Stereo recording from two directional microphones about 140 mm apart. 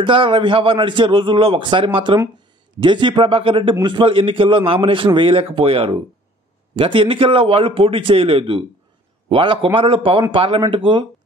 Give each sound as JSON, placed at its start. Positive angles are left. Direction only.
{"t": 0.0, "sound": "a man's voice", "side_deg": -40}